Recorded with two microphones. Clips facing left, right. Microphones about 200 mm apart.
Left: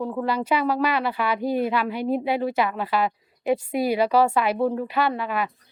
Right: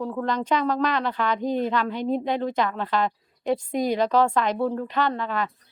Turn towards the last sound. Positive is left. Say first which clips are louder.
# left 1 dB
turn(degrees=10)  # may be behind; listen again after turning